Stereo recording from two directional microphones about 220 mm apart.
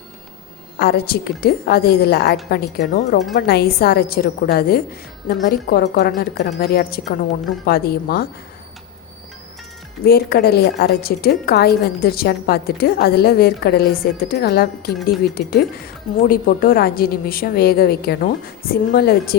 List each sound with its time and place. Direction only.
0.8 s a woman's voice: 45° left (ahead or behind)
10.0 s a woman's voice: 45° left (ahead or behind)